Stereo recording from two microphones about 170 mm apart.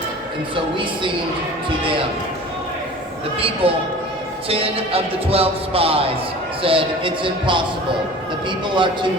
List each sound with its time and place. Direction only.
3.3 s speech: 35° right (ahead or behind)